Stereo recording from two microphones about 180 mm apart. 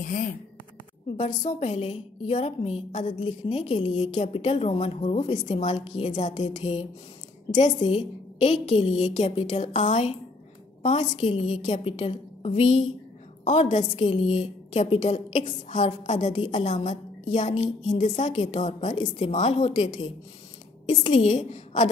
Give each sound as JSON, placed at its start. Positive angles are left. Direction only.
{"t": 1.1, "sound": "a woman's voice", "side_deg": 40}
{"t": 3.2, "sound": "a woman's voice", "side_deg": 30}